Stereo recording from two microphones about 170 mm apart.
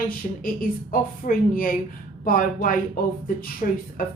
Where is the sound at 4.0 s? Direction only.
55° left (ahead or behind).